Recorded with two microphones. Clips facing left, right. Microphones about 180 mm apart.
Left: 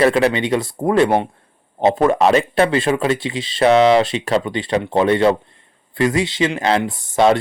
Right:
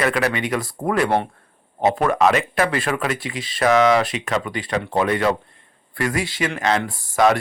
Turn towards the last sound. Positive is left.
turn(degrees=25)  # may be behind; listen again after turning